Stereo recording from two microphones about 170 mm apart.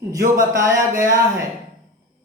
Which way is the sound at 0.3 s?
20° right (ahead or behind).